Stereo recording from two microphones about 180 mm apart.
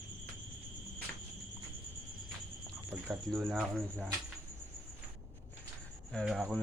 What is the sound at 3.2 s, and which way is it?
Speech, 5° left (ahead or behind).